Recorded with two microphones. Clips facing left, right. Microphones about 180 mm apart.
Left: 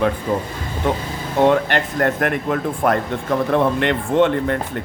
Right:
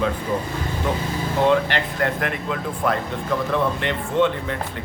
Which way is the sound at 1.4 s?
50° left (ahead or behind).